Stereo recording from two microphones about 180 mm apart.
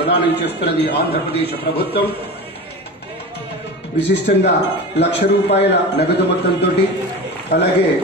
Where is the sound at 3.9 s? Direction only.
70° left (ahead or behind).